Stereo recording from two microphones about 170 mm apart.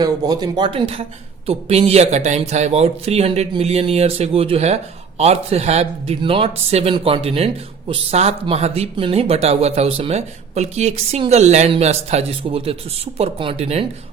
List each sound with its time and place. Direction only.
0.0 s speech: 25° right (ahead or behind)